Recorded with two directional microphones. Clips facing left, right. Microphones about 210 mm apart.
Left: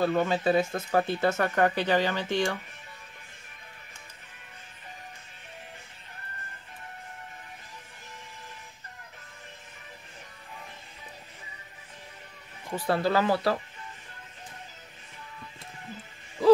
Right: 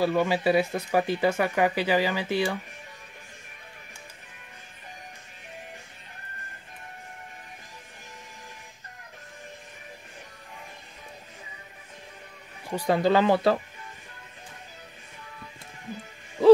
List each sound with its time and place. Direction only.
0.0 s speech: 10° right (ahead or behind)
12.6 s speech: 15° right (ahead or behind)